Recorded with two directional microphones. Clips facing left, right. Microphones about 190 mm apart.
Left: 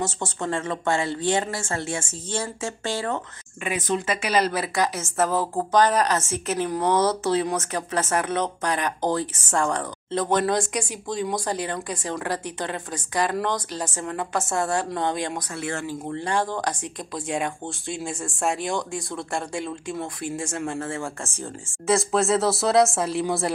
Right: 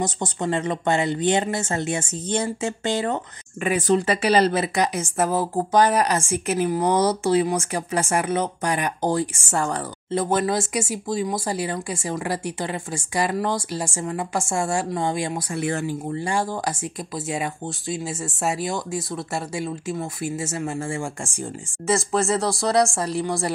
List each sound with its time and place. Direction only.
0.0 s speech: 15° right (ahead or behind)
3.6 s a woman's voice: 45° right (ahead or behind); by 21.7 s 15° right (ahead or behind)
21.8 s speech: centre (ahead or behind)